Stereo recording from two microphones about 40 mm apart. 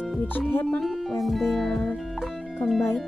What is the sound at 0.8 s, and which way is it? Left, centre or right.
Music, centre.